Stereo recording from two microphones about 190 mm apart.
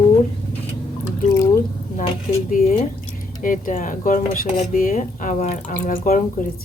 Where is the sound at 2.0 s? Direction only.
30° left (ahead or behind).